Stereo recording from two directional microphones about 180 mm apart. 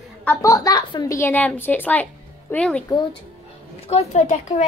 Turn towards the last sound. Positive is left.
turn(degrees=40)  # may be behind; listen again after turning